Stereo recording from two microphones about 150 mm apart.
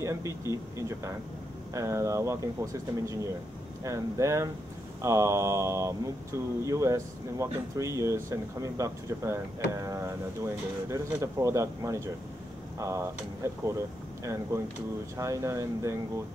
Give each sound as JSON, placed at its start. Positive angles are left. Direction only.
{"t": 0.5, "sound": "speech", "side_deg": -20}